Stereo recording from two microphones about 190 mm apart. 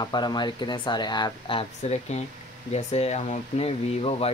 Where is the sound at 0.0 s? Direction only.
20° left (ahead or behind).